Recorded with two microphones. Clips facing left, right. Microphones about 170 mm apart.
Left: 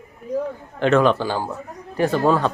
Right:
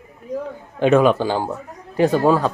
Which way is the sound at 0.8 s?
15° right (ahead or behind).